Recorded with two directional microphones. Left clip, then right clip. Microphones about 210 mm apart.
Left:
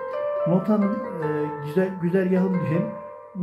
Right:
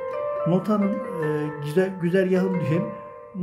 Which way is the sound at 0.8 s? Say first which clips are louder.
Right 1 dB; centre (ahead or behind).